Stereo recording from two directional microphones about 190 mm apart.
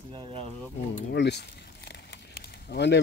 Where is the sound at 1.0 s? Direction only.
60° left (ahead or behind).